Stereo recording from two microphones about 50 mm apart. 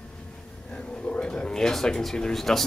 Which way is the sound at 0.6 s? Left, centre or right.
Left.